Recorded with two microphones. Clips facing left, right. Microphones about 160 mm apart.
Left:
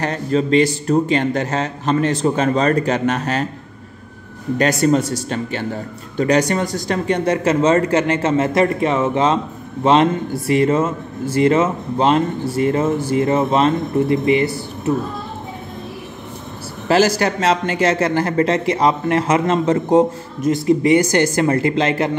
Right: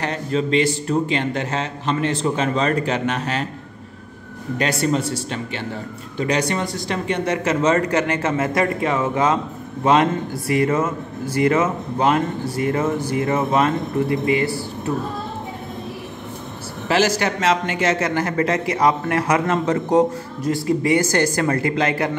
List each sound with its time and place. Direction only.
0.0 s speech: 40° left (ahead or behind)
4.6 s a man's voice: 45° left (ahead or behind); by 14.6 s 20° left (ahead or behind)
16.8 s a man's voice: 40° left (ahead or behind)